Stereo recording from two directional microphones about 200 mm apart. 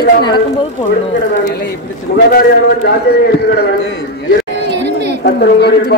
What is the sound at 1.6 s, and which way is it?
A man's voice, 50° left (ahead or behind).